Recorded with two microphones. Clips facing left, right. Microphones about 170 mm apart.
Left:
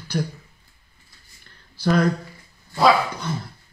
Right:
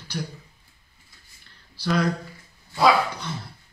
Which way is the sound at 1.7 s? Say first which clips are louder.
Left 4 dB; 50° left (ahead or behind).